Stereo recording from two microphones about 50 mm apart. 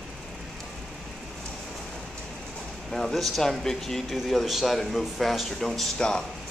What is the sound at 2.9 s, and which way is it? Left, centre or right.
Speech, centre.